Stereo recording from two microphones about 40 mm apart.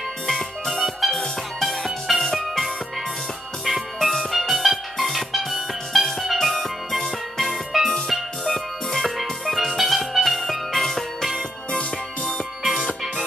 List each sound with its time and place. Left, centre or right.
0.3 s music: centre
1.9 s music: centre
3.6 s music: centre
11.8 s music: left